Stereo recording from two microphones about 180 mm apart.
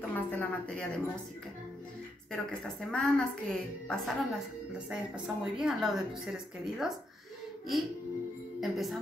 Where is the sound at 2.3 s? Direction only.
5° left (ahead or behind).